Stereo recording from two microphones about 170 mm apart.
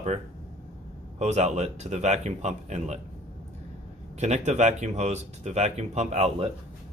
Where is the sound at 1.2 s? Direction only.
40° right (ahead or behind).